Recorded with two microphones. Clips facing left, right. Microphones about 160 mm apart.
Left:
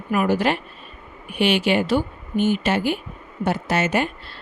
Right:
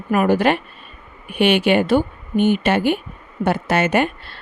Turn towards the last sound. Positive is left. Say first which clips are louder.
# right 4 dB
turn(degrees=-60)  # may be behind; listen again after turning